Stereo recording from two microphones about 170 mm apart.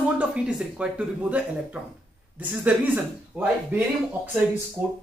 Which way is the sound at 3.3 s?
5° right (ahead or behind).